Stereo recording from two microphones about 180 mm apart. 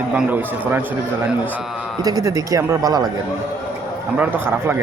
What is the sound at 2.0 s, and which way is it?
Speech, 20° right (ahead or behind).